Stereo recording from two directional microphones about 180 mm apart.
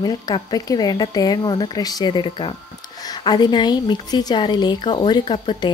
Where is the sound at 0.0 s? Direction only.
20° left (ahead or behind).